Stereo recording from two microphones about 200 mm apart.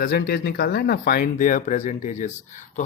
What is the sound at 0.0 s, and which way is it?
Speech, 50° left (ahead or behind).